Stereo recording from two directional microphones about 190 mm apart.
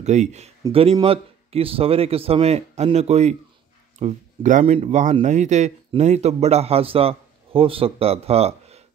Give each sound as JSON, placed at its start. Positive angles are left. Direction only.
{"t": 0.0, "sound": "speech", "side_deg": -35}